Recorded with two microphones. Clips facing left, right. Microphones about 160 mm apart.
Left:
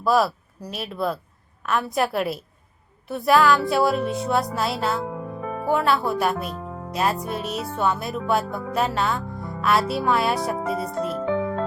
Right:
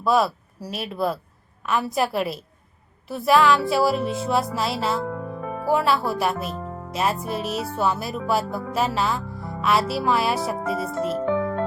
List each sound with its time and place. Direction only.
0.0 s speech: centre (ahead or behind)
1.6 s music: centre (ahead or behind)